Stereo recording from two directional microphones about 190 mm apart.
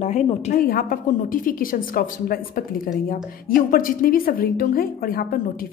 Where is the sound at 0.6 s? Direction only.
50° left (ahead or behind).